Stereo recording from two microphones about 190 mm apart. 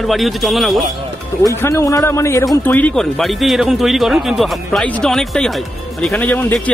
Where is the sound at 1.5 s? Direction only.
15° left (ahead or behind).